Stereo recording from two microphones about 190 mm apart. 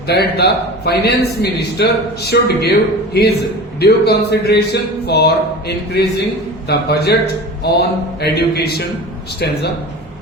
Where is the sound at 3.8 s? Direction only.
60° left (ahead or behind).